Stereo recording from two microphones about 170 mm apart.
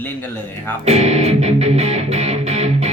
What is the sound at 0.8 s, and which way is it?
Music, 40° right (ahead or behind).